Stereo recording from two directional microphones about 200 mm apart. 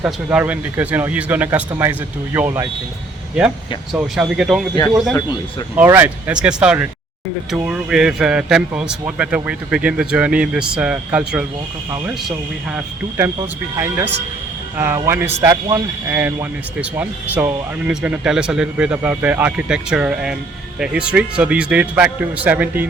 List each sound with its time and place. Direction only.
0.0 s speech: 5° right (ahead or behind)
3.9 s speech: 5° right (ahead or behind)
5.1 s speech: 20° left (ahead or behind)
5.7 s speech: 10° right (ahead or behind)
12.7 s speech: 10° right (ahead or behind)